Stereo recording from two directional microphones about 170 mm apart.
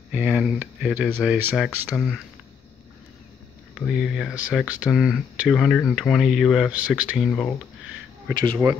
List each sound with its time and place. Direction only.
0.1 s speech: 5° right (ahead or behind)
2.0 s speech: centre (ahead or behind)
3.7 s speech: centre (ahead or behind)
8.3 s speech: 15° right (ahead or behind)